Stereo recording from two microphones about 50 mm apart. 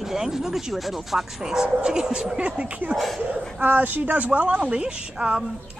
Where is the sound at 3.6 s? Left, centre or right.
Right.